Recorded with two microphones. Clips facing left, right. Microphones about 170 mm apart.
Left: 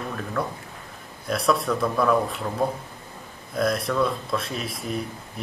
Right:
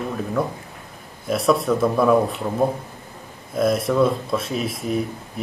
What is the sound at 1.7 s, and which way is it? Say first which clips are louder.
Speech: right 5 dB; 20° right (ahead or behind).